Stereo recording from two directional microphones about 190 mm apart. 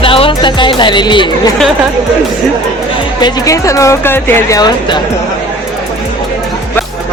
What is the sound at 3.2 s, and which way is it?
Speech, 20° left (ahead or behind).